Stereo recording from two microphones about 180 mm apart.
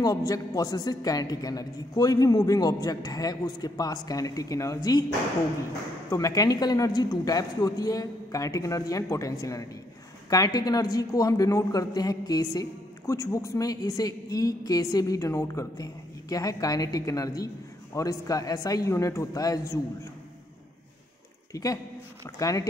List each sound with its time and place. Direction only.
0.0 s speech: 20° left (ahead or behind)
6.0 s speech: 20° left (ahead or behind)
22.2 s speech: 20° left (ahead or behind)